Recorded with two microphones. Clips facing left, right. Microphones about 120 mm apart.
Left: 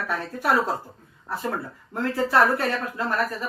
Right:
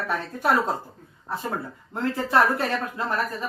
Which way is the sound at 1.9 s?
20° right (ahead or behind).